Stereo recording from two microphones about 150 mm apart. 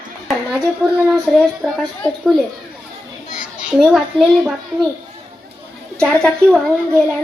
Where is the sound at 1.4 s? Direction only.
5° left (ahead or behind).